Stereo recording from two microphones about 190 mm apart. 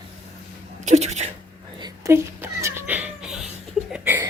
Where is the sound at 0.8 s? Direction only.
35° right (ahead or behind).